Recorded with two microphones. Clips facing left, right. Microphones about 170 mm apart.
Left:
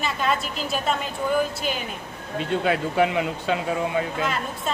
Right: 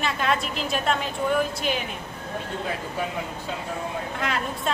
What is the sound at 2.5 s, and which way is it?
Speech, 75° left (ahead or behind).